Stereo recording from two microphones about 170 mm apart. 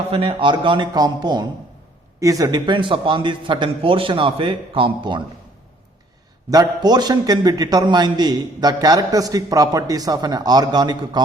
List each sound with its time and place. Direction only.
0.1 s a man's voice: 30° right (ahead or behind)
6.5 s a man's voice: 25° right (ahead or behind)